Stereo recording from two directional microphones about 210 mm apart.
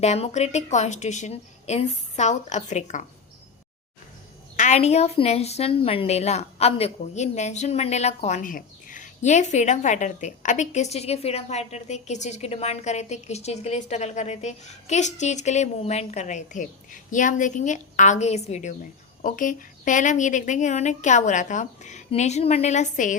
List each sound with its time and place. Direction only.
0.0 s a woman's voice: 30° left (ahead or behind)
4.5 s a woman's voice: 35° left (ahead or behind)